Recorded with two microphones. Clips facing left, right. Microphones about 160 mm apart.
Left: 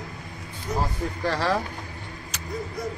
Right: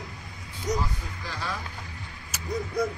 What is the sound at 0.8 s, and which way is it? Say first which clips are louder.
Speech: left 6 dB; 80° left.